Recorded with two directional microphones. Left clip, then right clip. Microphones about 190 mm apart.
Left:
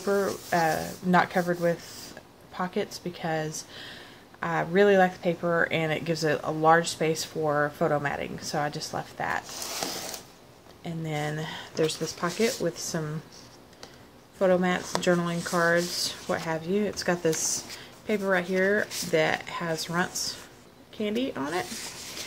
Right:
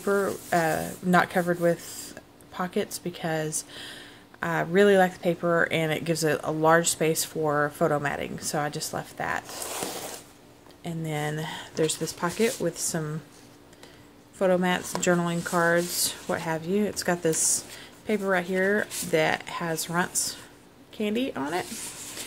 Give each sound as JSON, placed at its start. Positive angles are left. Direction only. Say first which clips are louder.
{"t": 0.0, "sound": "speech", "louder": "right 1 dB", "side_deg": -25}
{"t": 10.8, "sound": "speech", "louder": "right 1 dB", "side_deg": -20}
{"t": 14.4, "sound": "speech", "louder": "even", "side_deg": -20}